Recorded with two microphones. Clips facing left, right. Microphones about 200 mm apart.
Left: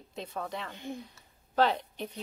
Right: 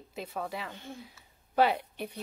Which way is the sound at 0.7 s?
15° left (ahead or behind).